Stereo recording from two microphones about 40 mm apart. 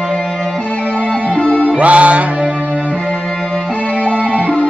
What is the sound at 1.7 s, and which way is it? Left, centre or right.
Music, right.